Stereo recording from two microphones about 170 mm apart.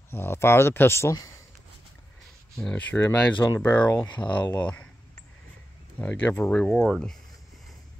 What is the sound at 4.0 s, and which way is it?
Speech, 25° left (ahead or behind).